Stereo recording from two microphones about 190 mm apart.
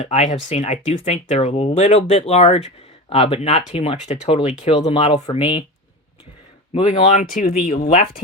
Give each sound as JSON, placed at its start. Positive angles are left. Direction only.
{"t": 0.0, "sound": "speech", "side_deg": 35}
{"t": 6.7, "sound": "speech", "side_deg": 35}